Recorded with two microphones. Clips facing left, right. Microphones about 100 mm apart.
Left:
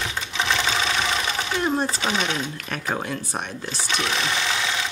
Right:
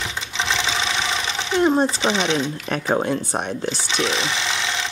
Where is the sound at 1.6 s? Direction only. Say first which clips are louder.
Right 7 dB; 20° right (ahead or behind).